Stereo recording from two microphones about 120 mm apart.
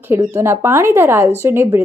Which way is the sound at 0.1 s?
20° right (ahead or behind).